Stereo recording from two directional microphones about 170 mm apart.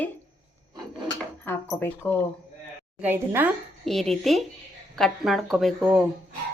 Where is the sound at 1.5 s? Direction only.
15° left (ahead or behind).